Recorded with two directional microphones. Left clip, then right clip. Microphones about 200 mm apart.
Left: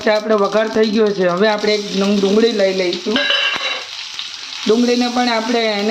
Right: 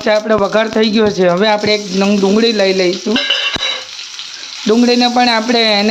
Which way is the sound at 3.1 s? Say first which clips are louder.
Right 2 dB; 55° right (ahead or behind).